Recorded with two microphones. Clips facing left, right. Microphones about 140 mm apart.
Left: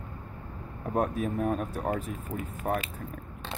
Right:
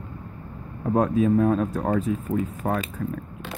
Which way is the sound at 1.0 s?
90° right.